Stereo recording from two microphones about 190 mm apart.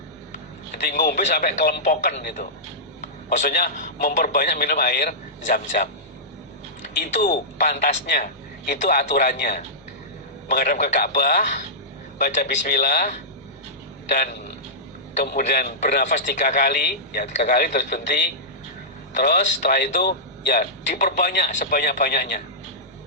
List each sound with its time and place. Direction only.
0.9 s a man's voice: 45° left (ahead or behind)
7.0 s a man's voice: 50° left (ahead or behind)
12.5 s a man's voice: 50° left (ahead or behind)
15.3 s a man's voice: 55° left (ahead or behind)
15.8 s a man's voice: 40° left (ahead or behind)
17.9 s a man's voice: 55° left (ahead or behind)